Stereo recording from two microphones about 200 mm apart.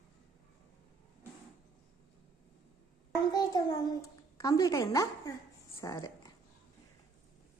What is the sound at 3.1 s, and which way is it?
A child's voice, 20° left (ahead or behind).